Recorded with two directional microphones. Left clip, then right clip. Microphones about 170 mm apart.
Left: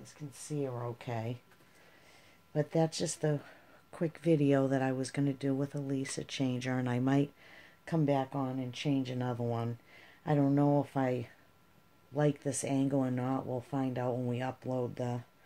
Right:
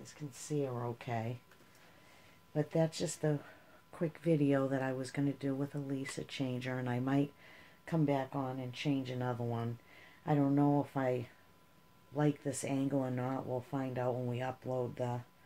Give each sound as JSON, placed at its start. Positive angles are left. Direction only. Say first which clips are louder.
{"t": 0.0, "sound": "speech", "louder": "even", "side_deg": 25}
{"t": 0.9, "sound": "speech", "louder": "even", "side_deg": 45}
{"t": 2.5, "sound": "speech", "louder": "left 2 dB", "side_deg": 60}